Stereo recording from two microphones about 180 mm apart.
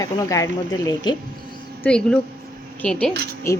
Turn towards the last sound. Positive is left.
turn(degrees=15)  # may be behind; listen again after turning